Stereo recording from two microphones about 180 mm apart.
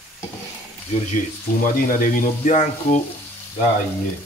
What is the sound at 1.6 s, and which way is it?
Speech, 50° left (ahead or behind).